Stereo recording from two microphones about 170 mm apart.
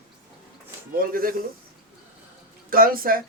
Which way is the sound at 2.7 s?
60° right (ahead or behind).